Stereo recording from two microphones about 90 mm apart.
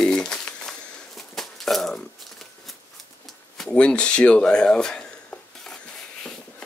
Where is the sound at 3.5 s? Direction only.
5° left (ahead or behind).